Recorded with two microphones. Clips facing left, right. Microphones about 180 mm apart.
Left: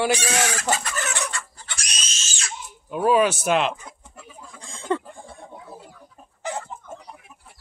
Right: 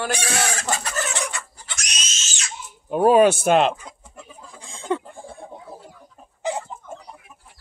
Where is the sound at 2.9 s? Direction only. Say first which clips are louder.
Right 4 dB; 40° right (ahead or behind).